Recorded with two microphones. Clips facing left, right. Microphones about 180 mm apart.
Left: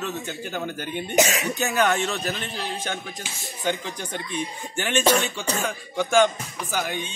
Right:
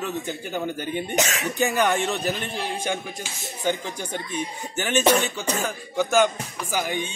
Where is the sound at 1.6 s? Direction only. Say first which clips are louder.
Right 2 dB; 10° right (ahead or behind).